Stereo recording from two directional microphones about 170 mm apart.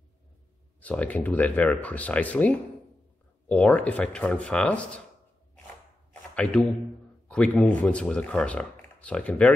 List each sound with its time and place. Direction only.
0.7 s speech: 10° left (ahead or behind)
6.3 s a man's voice: 5° left (ahead or behind)